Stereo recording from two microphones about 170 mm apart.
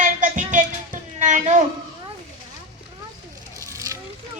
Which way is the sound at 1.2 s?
45° right (ahead or behind).